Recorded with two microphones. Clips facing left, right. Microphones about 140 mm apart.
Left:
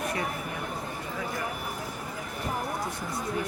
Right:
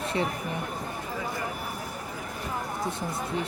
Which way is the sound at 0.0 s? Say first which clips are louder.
Right 3 dB; 25° right (ahead or behind).